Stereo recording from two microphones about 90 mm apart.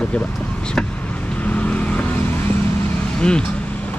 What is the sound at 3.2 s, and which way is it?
Speech, 10° left (ahead or behind).